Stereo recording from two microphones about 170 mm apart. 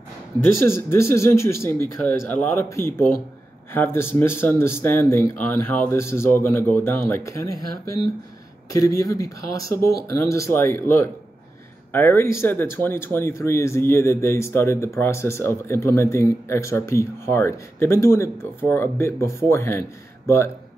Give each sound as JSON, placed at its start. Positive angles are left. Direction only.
{"t": 0.6, "sound": "speech", "side_deg": 15}
{"t": 8.7, "sound": "speech", "side_deg": 20}